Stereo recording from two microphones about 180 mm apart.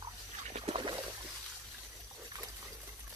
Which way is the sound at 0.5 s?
30° right (ahead or behind).